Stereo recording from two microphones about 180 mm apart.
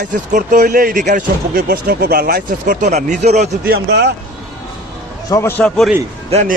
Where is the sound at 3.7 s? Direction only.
65° right (ahead or behind).